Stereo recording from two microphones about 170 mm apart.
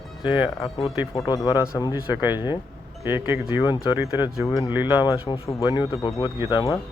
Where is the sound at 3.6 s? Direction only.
25° left (ahead or behind).